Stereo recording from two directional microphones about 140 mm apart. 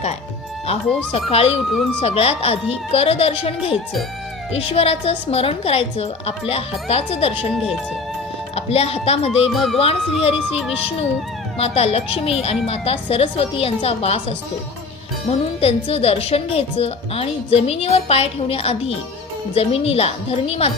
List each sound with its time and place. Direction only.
0.7 s speech: 45° left (ahead or behind)
9.5 s a child's voice: centre (ahead or behind)
9.7 s speech: 45° left (ahead or behind)